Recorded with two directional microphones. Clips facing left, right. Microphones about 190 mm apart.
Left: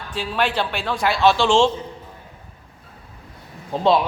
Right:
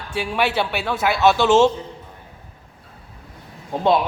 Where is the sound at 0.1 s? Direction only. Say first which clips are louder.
Right 1 dB; 10° right (ahead or behind).